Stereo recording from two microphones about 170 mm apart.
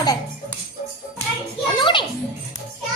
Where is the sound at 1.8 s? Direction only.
30° left (ahead or behind).